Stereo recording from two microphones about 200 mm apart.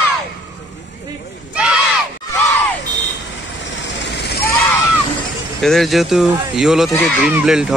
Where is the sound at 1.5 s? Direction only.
5° right (ahead or behind).